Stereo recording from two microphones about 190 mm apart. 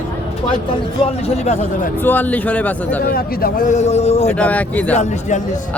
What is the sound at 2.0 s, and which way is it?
Speech, 10° left (ahead or behind).